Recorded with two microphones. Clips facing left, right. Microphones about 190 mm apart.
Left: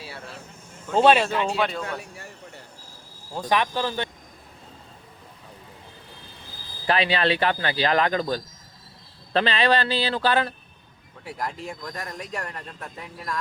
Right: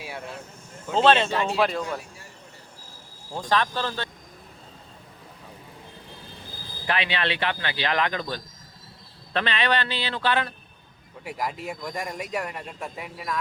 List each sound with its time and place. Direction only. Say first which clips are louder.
0.9 s speech: left 2 dB; 10° left (ahead or behind)
1.2 s speech: even; centre (ahead or behind)
2.0 s vehicle: left 4 dB; 65° left (ahead or behind)
3.5 s speech: left 1 dB; 15° left (ahead or behind)
6.8 s speech: left 5 dB; 35° left (ahead or behind)
11.2 s speech: right 1 dB; 5° right (ahead or behind)